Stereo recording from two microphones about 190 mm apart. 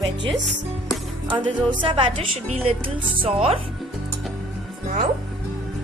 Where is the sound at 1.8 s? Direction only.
30° right (ahead or behind).